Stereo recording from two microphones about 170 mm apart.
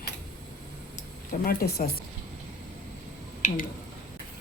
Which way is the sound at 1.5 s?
60° left (ahead or behind).